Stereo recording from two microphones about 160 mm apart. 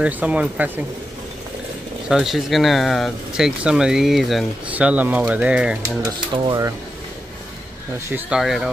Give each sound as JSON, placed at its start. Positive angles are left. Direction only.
{"t": 0.0, "sound": "speech", "side_deg": -10}
{"t": 2.0, "sound": "speech", "side_deg": 0}
{"t": 6.3, "sound": "speech", "side_deg": -25}
{"t": 8.1, "sound": "speech", "side_deg": -5}